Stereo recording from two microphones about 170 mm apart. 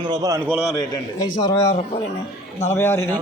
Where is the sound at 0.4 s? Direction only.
5° right (ahead or behind).